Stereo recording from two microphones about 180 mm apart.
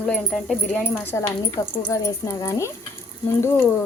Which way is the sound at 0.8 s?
15° left (ahead or behind).